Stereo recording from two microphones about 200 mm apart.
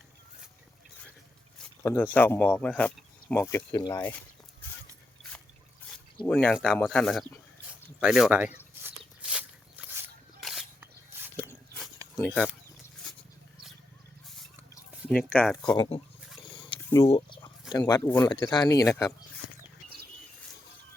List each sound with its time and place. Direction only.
1.5 s speech: 10° left (ahead or behind)
3.9 s speech: 10° left (ahead or behind)
6.2 s a sound: 5° left (ahead or behind); by 11.5 s 10° right (ahead or behind)
12.1 s speech: 10° left (ahead or behind)
15.1 s speech: 5° left (ahead or behind)
15.7 s speech: 25° left (ahead or behind)
16.5 s roaring cats: 25° left (ahead or behind)
17.1 s a sound: 25° left (ahead or behind)
18.3 s speech: 20° left (ahead or behind)